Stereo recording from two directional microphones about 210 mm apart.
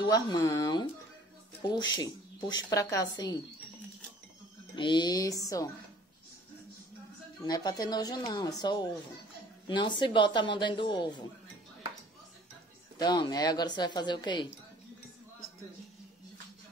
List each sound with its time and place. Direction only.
0.0 s a woman's voice: 20° left (ahead or behind)
4.7 s speech: 20° left (ahead or behind)
7.4 s a woman's voice: 20° left (ahead or behind)
13.0 s a woman's voice: 20° left (ahead or behind)